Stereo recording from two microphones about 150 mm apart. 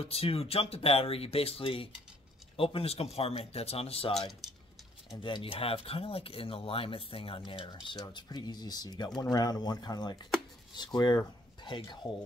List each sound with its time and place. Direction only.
0.0 s speech: 40° left (ahead or behind)
5.1 s speech: 30° left (ahead or behind)